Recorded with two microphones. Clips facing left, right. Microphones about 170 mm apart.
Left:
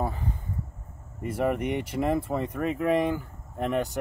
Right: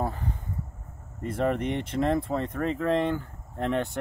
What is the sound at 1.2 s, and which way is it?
Speech, 5° left (ahead or behind).